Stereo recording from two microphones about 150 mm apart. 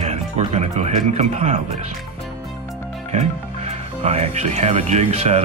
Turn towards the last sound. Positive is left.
turn(degrees=-45)  # may be behind; listen again after turning